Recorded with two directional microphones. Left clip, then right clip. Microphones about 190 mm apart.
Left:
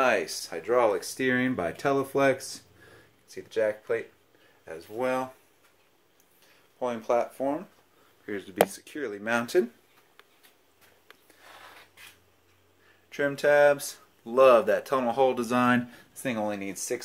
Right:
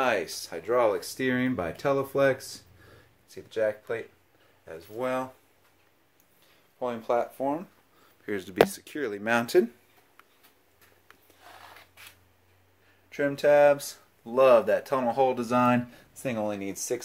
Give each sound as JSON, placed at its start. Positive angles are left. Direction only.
{"t": 0.0, "sound": "speech", "side_deg": 0}
{"t": 6.8, "sound": "speech", "side_deg": 0}
{"t": 8.3, "sound": "speech", "side_deg": -50}
{"t": 13.1, "sound": "speech", "side_deg": 0}